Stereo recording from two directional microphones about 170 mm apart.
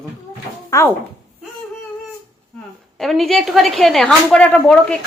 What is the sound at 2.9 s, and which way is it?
A woman's voice, centre (ahead or behind).